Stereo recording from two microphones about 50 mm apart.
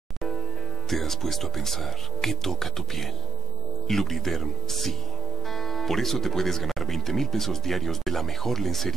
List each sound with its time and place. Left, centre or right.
0.8 s speech: centre